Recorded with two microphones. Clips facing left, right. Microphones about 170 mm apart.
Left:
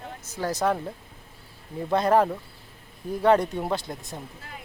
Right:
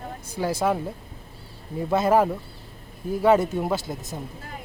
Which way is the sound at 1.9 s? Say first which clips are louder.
Right 1 dB; 5° right (ahead or behind).